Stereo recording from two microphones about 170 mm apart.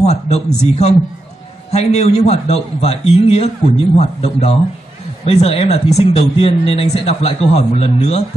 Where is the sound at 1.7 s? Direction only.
40° left (ahead or behind).